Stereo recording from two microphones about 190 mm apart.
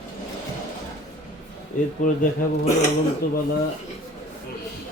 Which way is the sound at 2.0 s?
45° left (ahead or behind).